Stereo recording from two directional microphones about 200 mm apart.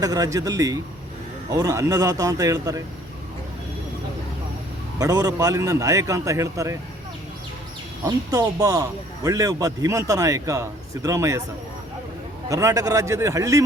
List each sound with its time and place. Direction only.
0.0 s a man's voice: 20° right (ahead or behind)
4.9 s a man's voice: 20° right (ahead or behind)
8.0 s a man's voice: 20° right (ahead or behind)
12.5 s a man's voice: 15° right (ahead or behind)